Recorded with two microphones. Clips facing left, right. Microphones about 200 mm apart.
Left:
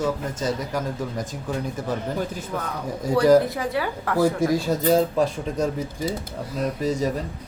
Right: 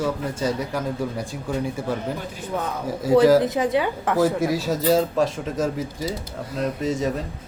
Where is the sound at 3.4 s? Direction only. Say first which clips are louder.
Right 2 dB; 20° right (ahead or behind).